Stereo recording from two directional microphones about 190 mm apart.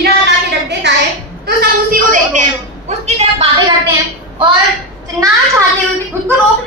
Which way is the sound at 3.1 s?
30° right (ahead or behind).